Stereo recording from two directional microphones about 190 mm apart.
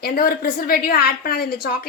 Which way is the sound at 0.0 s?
50° left (ahead or behind).